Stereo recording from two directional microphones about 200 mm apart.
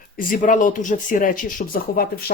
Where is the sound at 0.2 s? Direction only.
45° left (ahead or behind).